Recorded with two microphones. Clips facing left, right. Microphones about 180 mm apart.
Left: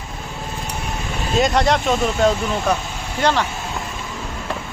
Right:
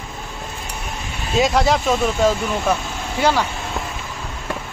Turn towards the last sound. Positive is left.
turn(degrees=-10)  # may be behind; listen again after turning